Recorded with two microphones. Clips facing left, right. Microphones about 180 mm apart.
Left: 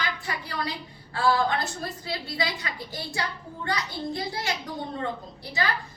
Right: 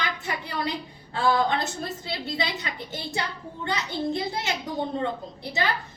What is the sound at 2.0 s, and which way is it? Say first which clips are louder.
A woman's voice: left 1 dB; 20° right (ahead or behind).